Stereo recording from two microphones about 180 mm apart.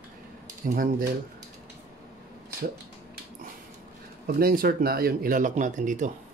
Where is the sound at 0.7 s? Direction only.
50° right (ahead or behind).